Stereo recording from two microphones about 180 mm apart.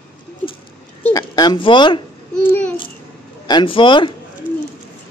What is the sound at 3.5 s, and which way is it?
Speech, 30° left (ahead or behind).